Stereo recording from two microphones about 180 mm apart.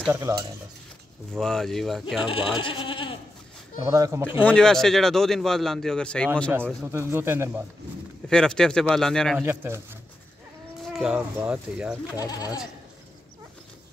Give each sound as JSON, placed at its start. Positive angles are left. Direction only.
{"t": 0.0, "sound": "speech", "side_deg": -15}
{"t": 1.3, "sound": "a man's voice", "side_deg": 5}
{"t": 2.2, "sound": "speech", "side_deg": 30}
{"t": 3.8, "sound": "speech", "side_deg": -15}
{"t": 4.5, "sound": "a man's voice", "side_deg": 5}
{"t": 6.8, "sound": "speech", "side_deg": -15}
{"t": 8.3, "sound": "a man's voice", "side_deg": 5}
{"t": 9.4, "sound": "speech", "side_deg": -15}
{"t": 11.0, "sound": "a man's voice", "side_deg": -5}
{"t": 12.2, "sound": "speech", "side_deg": 20}